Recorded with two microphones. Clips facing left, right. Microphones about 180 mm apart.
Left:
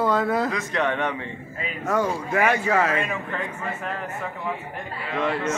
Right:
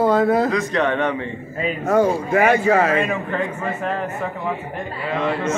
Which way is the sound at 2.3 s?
50° right (ahead or behind).